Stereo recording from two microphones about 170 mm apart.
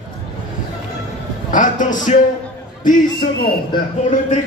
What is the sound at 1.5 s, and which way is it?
Speech, 50° left (ahead or behind).